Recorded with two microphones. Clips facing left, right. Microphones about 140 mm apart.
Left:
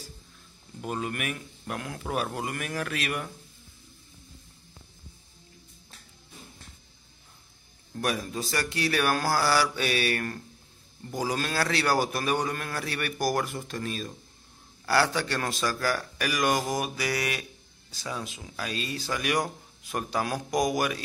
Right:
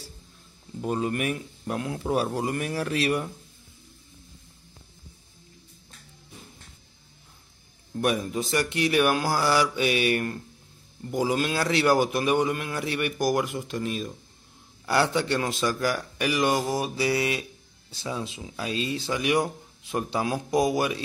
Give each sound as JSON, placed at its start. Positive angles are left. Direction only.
{"t": 0.7, "sound": "a man's voice", "side_deg": -30}
{"t": 7.9, "sound": "a man's voice", "side_deg": -20}